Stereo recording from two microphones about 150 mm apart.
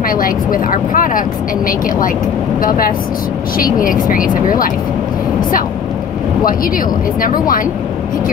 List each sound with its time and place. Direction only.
0.1 s speech: 70° left (ahead or behind)
3.5 s speech: 70° left (ahead or behind)
7.2 s speech: 70° left (ahead or behind)